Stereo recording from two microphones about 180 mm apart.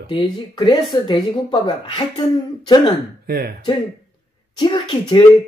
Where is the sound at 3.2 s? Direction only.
55° right (ahead or behind).